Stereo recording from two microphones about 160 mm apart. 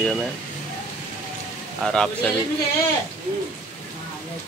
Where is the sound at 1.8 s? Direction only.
5° left (ahead or behind).